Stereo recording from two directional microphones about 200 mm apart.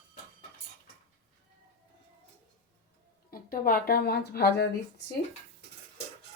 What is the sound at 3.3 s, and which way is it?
Speech, 45° left (ahead or behind).